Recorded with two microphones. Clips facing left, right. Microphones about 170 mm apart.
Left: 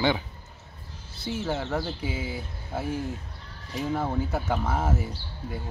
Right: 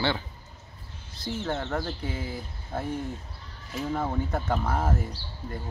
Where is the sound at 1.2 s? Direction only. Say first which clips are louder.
Left 1 dB; 5° left (ahead or behind).